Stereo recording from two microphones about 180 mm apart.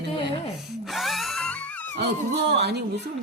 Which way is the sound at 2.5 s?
70° right (ahead or behind).